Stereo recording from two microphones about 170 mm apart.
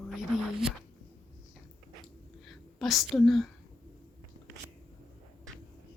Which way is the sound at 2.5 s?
Centre (ahead or behind).